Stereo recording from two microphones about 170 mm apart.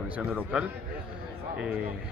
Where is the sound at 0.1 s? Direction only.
10° right (ahead or behind).